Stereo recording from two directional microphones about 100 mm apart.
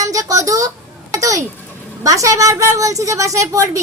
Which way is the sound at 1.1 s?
35° right (ahead or behind).